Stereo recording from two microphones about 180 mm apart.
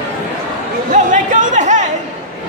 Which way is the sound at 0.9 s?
45° right (ahead or behind).